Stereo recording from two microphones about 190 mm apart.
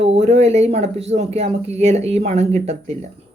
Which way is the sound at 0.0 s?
35° right (ahead or behind).